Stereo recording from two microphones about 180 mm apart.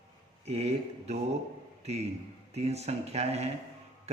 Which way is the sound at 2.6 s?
35° right (ahead or behind).